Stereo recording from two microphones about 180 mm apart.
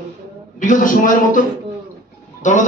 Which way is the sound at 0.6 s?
45° left (ahead or behind).